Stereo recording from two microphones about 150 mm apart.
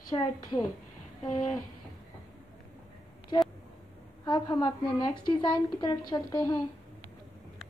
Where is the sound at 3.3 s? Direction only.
30° left (ahead or behind).